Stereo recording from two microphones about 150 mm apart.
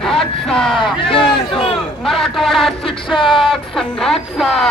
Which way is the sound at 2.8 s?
35° left (ahead or behind).